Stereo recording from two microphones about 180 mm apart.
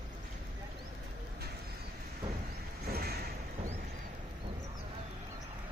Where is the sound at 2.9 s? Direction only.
60° right (ahead or behind).